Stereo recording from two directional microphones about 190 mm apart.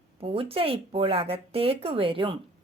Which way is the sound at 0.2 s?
30° right (ahead or behind).